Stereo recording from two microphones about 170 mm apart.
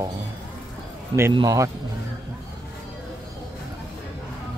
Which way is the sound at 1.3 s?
20° right (ahead or behind).